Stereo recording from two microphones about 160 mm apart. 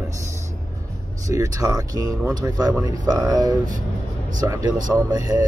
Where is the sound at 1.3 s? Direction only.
20° right (ahead or behind).